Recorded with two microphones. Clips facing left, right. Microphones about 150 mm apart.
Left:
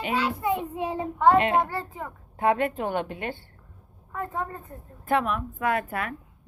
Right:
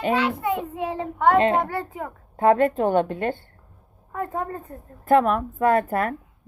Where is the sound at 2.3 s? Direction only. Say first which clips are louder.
Right 6 dB; 40° right (ahead or behind).